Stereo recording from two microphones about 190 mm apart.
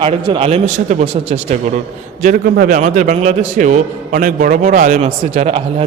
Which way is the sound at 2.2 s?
50° right (ahead or behind).